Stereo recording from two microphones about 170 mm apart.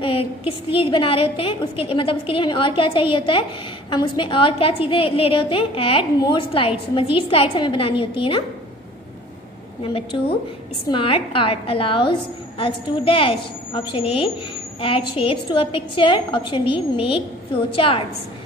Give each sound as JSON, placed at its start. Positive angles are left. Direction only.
{"t": 0.0, "sound": "a woman's voice", "side_deg": 35}
{"t": 9.9, "sound": "a woman's voice", "side_deg": 30}